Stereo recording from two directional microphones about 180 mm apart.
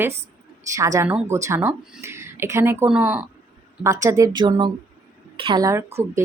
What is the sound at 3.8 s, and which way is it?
A woman's voice, 15° right (ahead or behind).